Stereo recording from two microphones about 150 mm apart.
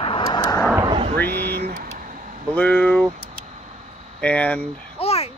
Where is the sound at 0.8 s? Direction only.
40° right (ahead or behind).